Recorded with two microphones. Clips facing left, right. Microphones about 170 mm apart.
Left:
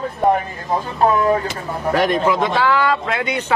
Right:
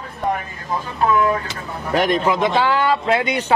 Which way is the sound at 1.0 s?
35° left (ahead or behind).